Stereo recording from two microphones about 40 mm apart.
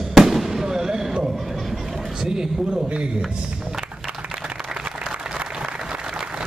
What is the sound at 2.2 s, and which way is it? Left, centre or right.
Speech, centre.